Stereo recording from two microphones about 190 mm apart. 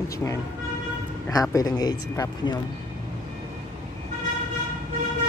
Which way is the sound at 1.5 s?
20° left (ahead or behind).